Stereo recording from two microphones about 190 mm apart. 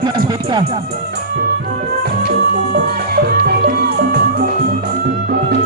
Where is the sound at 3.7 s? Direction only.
55° right (ahead or behind).